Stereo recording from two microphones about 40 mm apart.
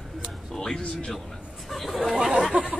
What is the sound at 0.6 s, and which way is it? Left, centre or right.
Speech, centre.